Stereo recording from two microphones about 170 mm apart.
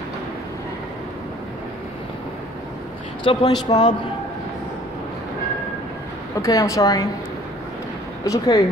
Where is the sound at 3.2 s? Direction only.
30° left (ahead or behind).